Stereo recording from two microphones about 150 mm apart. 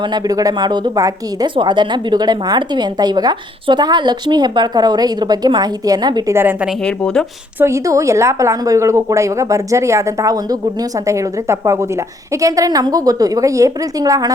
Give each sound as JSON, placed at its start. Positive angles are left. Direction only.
{"t": 0.1, "sound": "a woman's voice", "side_deg": -25}
{"t": 6.8, "sound": "speech", "side_deg": 5}
{"t": 7.6, "sound": "a woman's voice", "side_deg": -20}